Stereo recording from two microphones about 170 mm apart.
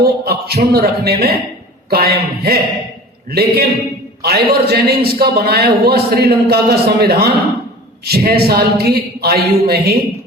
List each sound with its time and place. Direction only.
0.0 s a man's voice: 65° right (ahead or behind)